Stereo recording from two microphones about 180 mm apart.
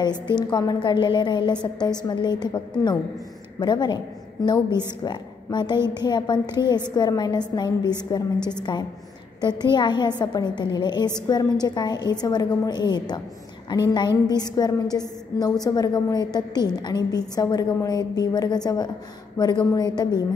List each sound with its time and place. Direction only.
0.0 s a woman's voice: 25° left (ahead or behind)
9.4 s a woman's voice: 25° left (ahead or behind)